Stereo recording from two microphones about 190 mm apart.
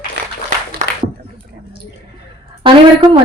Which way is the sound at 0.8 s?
40° right (ahead or behind).